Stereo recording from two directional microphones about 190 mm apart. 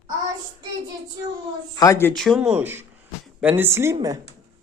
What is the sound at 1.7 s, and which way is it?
Speech, 15° left (ahead or behind).